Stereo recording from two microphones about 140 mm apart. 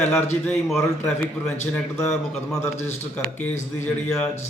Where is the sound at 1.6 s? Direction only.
20° left (ahead or behind).